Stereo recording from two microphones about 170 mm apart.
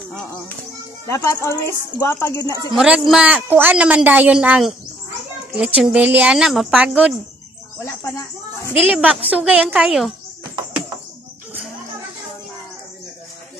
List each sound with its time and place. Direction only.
1.0 s speech: 15° left (ahead or behind)
2.7 s a woman's voice: 5° right (ahead or behind)
5.8 s a woman's voice: 5° right (ahead or behind)
7.8 s speech: 20° left (ahead or behind)
8.8 s a woman's voice: 10° right (ahead or behind)